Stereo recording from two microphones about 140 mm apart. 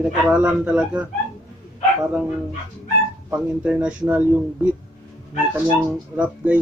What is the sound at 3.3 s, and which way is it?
Speech, 10° right (ahead or behind).